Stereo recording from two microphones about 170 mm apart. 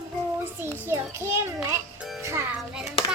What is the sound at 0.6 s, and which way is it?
A child's voice, 15° right (ahead or behind).